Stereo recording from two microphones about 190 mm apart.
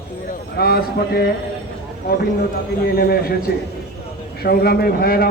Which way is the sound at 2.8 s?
55° left (ahead or behind).